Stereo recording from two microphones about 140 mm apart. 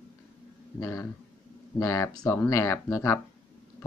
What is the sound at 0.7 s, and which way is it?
Speech, 25° left (ahead or behind).